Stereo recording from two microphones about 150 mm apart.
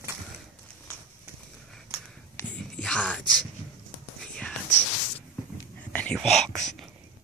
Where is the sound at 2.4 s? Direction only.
10° left (ahead or behind).